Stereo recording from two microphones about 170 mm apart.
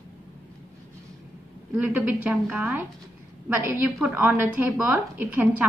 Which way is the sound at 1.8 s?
10° right (ahead or behind).